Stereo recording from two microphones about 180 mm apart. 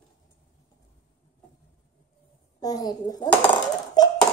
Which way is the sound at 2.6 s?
20° left (ahead or behind).